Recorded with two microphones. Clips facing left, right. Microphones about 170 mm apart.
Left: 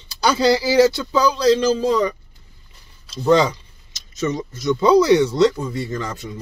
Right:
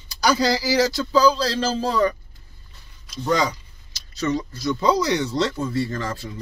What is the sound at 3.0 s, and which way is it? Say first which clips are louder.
Speech: left 6 dB; 30° left (ahead or behind).